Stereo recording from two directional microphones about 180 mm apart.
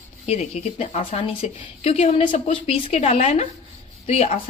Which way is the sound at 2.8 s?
40° left (ahead or behind).